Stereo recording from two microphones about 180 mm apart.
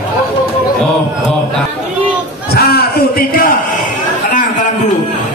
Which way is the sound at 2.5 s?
60° left (ahead or behind).